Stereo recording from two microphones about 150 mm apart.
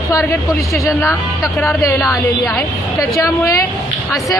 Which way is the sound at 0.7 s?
20° left (ahead or behind).